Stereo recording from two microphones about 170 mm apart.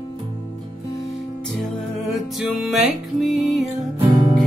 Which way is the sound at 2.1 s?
Centre (ahead or behind).